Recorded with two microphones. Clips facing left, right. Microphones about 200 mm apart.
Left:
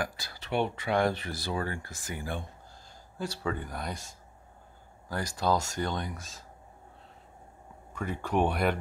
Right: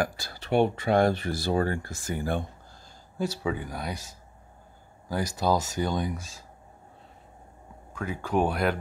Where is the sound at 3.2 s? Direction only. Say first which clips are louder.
Right 4 dB; 5° right (ahead or behind).